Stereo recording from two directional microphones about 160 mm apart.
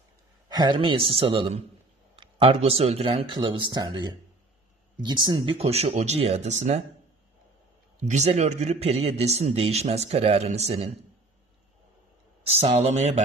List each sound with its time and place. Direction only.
0.5 s a man's voice: 25° right (ahead or behind); by 6.8 s 45° right (ahead or behind)
8.0 s a man's voice: 45° right (ahead or behind)
12.4 s a man's voice: 40° right (ahead or behind)